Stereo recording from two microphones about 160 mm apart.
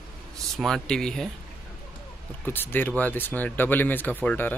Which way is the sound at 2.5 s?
15° left (ahead or behind).